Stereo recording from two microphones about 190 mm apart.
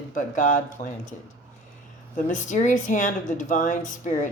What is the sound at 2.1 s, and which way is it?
Speech, 40° left (ahead or behind).